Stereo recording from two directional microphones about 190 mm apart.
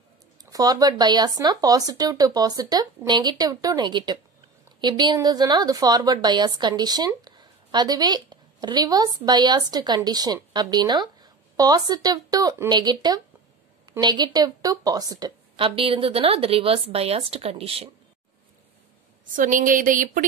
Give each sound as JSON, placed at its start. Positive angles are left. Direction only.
{"t": 0.4, "sound": "a woman's voice", "side_deg": -20}
{"t": 19.3, "sound": "speech", "side_deg": -45}